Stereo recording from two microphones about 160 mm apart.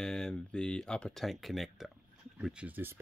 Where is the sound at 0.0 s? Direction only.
5° left (ahead or behind).